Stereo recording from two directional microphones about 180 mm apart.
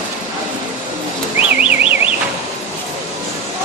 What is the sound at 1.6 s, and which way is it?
Car alarm, 5° right (ahead or behind).